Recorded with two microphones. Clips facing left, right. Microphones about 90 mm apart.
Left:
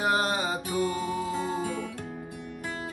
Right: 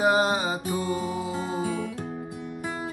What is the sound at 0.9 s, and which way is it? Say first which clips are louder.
Music: right 1 dB; 15° right (ahead or behind).